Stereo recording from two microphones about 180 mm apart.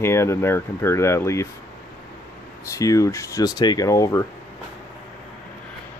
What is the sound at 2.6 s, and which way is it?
Speech, 20° left (ahead or behind).